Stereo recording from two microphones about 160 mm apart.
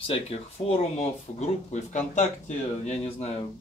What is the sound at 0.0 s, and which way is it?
Speech, 35° left (ahead or behind).